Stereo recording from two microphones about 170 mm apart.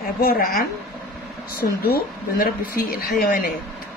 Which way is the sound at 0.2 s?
60° left (ahead or behind).